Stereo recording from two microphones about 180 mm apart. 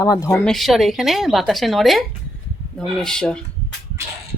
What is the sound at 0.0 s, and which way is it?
Speech, 20° left (ahead or behind).